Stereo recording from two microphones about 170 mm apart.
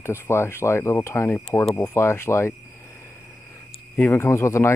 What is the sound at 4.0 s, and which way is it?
Speech, 15° left (ahead or behind).